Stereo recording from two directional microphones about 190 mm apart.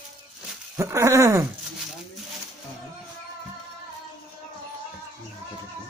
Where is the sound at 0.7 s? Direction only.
15° right (ahead or behind).